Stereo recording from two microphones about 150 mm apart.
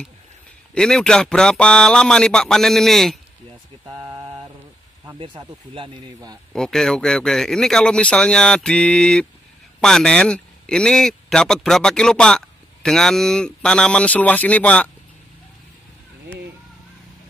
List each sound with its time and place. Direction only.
0.7 s a man's voice: 5° left (ahead or behind)
5.2 s speech: 35° right (ahead or behind)
6.5 s a man's voice: 5° left (ahead or behind)